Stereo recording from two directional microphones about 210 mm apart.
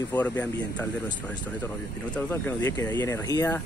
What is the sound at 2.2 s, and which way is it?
Speech, 10° left (ahead or behind).